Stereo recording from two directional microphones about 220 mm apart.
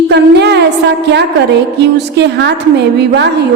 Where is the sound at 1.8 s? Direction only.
50° right (ahead or behind).